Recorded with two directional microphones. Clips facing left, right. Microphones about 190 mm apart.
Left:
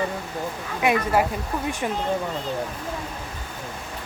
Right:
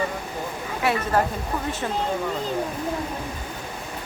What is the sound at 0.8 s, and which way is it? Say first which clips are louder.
Speech: left 2 dB; 15° left (ahead or behind).